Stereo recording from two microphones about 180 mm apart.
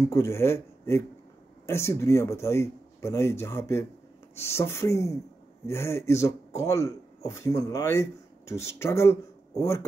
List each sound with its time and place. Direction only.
0.0 s speech: 15° left (ahead or behind)